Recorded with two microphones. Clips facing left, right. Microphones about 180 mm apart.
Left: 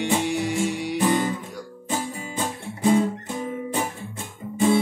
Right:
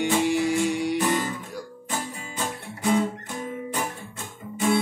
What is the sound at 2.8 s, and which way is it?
Guitar, 25° left (ahead or behind).